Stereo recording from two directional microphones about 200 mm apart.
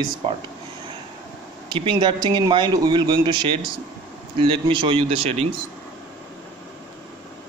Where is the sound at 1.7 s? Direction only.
25° right (ahead or behind).